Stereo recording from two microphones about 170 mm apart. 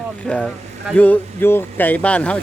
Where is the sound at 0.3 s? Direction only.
5° left (ahead or behind).